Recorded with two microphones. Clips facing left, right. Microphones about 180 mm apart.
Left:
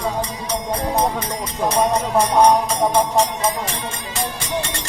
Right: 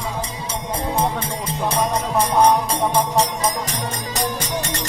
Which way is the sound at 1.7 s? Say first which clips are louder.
Left 4 dB; 30° left (ahead or behind).